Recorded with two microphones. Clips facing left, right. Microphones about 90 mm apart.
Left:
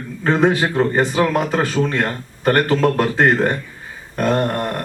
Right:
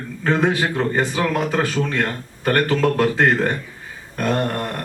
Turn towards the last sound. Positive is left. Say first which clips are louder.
# left 3 dB
turn(degrees=30)  # may be behind; listen again after turning